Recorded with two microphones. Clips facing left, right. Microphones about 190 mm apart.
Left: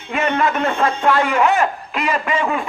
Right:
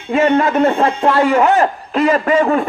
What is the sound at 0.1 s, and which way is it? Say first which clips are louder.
A man's voice: right 6 dB; 30° right (ahead or behind).